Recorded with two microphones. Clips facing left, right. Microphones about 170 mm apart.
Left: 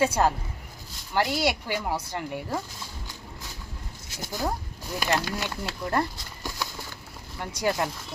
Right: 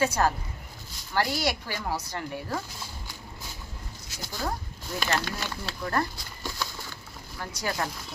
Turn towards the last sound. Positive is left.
turn(degrees=20)  # may be behind; listen again after turning